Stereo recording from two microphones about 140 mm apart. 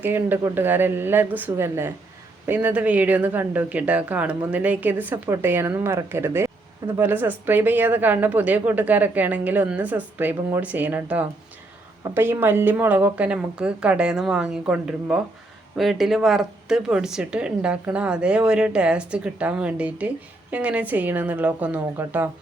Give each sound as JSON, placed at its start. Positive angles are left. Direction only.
{"t": 0.0, "sound": "speech", "side_deg": -15}